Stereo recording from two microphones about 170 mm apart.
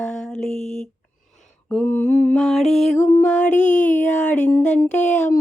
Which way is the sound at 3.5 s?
45° left (ahead or behind).